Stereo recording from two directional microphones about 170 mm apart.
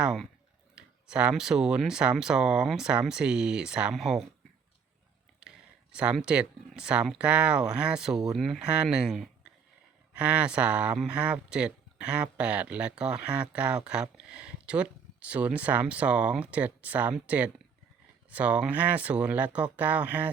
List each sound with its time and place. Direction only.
0.0 s speech: centre (ahead or behind)
5.4 s speech: 5° right (ahead or behind)